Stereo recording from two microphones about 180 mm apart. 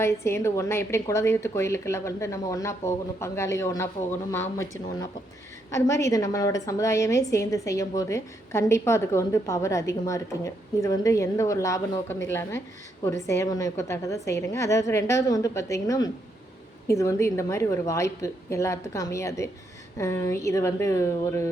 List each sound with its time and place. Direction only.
0.0 s a woman's voice: 15° left (ahead or behind)
5.7 s a woman's voice: 15° left (ahead or behind)